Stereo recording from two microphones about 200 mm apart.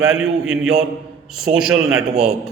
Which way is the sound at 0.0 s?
5° right (ahead or behind).